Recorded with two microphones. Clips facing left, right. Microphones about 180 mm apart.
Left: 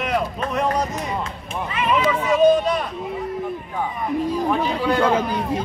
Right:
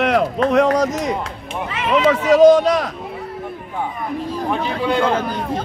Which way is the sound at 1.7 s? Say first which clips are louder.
Right 4 dB; 90° right.